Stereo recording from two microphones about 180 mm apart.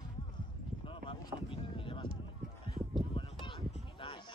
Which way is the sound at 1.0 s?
30° left (ahead or behind).